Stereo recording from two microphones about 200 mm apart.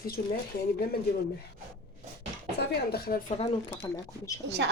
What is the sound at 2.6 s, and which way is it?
Speech, 50° left (ahead or behind).